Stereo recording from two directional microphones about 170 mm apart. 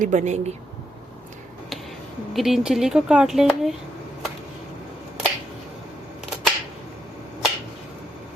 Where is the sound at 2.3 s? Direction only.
Centre (ahead or behind).